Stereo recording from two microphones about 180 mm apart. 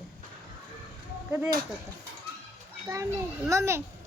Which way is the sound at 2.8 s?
15° right (ahead or behind).